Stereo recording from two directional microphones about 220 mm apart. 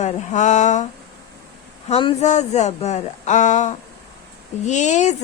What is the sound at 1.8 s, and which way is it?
A woman's voice, 30° left (ahead or behind).